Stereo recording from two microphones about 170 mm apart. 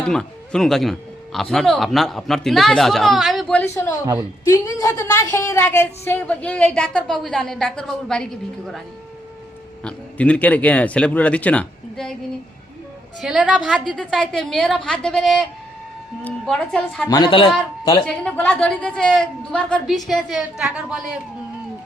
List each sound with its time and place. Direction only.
0.0 s a man's voice: 5° left (ahead or behind)
3.6 s a man's voice: 15° left (ahead or behind)
9.8 s speech: 5° left (ahead or behind)
13.2 s a man's voice: 5° right (ahead or behind)
17.1 s speech: 25° left (ahead or behind)
18.0 s a man's voice: 5° left (ahead or behind)